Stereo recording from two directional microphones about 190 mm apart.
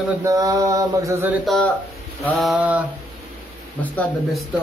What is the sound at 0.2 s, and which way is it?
Mantra, 15° right (ahead or behind).